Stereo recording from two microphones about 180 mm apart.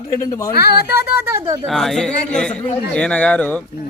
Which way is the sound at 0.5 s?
60° left (ahead or behind).